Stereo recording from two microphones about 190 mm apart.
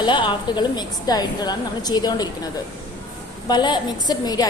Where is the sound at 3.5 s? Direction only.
25° left (ahead or behind).